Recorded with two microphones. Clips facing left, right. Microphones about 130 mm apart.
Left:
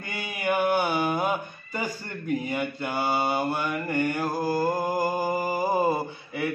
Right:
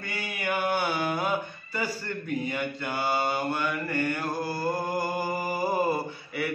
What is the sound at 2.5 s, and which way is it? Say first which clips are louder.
Mantra: left 3 dB; 15° left (ahead or behind).